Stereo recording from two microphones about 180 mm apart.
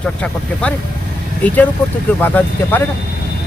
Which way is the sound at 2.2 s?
10° left (ahead or behind).